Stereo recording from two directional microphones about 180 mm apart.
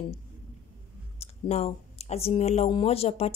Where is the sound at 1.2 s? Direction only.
35° left (ahead or behind).